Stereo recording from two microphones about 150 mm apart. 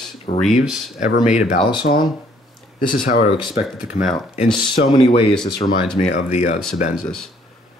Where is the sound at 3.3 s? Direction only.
30° left (ahead or behind).